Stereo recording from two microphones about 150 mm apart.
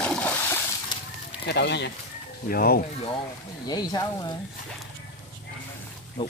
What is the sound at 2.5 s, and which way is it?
Speech, 90° left.